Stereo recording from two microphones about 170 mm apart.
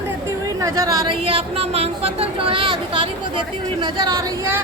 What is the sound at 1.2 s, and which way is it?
Speech, 35° right (ahead or behind).